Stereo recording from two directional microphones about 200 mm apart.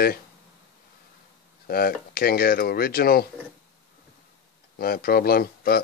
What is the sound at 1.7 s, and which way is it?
Speech, 50° left (ahead or behind).